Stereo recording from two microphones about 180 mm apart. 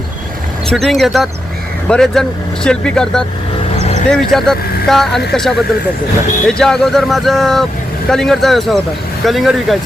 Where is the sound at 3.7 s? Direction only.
40° left (ahead or behind).